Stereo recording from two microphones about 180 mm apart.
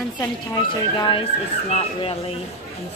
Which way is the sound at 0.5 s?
25° left (ahead or behind).